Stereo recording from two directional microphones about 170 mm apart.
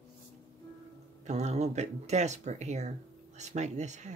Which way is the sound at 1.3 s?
40° right (ahead or behind).